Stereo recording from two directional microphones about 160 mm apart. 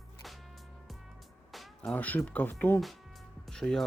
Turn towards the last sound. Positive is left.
turn(degrees=0)  # may be behind; listen again after turning